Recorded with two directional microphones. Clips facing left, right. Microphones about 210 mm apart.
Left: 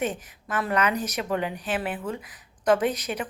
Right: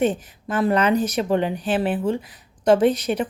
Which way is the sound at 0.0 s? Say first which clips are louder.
Right 8 dB; 30° right (ahead or behind).